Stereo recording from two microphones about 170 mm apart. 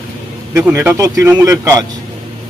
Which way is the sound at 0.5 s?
15° right (ahead or behind).